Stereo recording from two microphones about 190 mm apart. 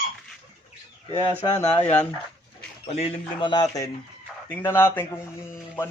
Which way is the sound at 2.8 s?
30° left (ahead or behind).